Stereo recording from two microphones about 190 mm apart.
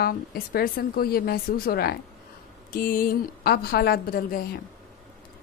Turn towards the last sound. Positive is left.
turn(degrees=50)  # may be behind; listen again after turning